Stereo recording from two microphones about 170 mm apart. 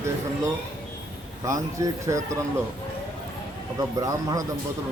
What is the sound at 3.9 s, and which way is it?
Speech, 20° right (ahead or behind).